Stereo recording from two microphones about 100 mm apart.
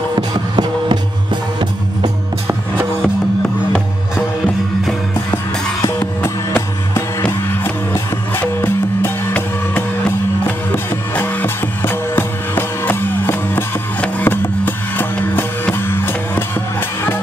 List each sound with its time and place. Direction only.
0.3 s music: 50° right (ahead or behind)
5.3 s music: 30° left (ahead or behind)